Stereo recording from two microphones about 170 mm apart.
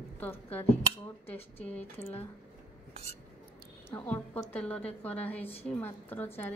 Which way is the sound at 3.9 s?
10° left (ahead or behind).